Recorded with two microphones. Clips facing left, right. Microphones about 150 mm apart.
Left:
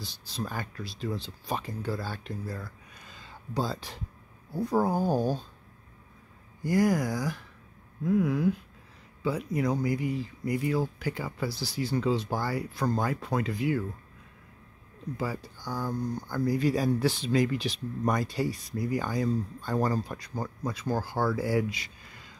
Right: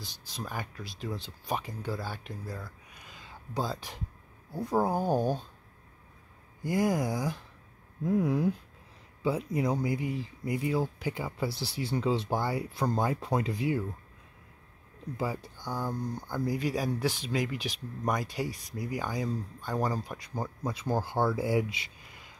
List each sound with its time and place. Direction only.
0.0 s speech: 15° right (ahead or behind)
6.6 s speech: 20° right (ahead or behind)
15.1 s speech: 20° right (ahead or behind)
20.7 s speech: 25° right (ahead or behind)